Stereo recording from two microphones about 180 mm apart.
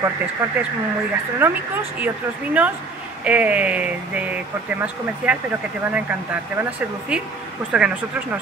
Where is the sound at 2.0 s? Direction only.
10° right (ahead or behind).